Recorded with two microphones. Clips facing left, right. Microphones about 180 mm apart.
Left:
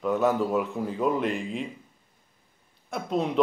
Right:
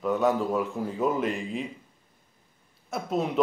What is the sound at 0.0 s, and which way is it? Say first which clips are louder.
Speech: left 1 dB; centre (ahead or behind).